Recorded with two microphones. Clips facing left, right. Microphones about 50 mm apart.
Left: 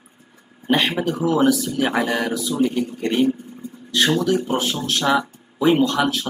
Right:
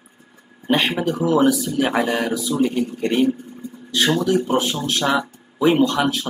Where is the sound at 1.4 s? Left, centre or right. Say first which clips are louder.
Even; centre.